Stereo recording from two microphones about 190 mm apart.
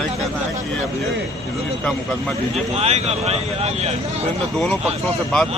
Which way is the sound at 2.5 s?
35° right (ahead or behind).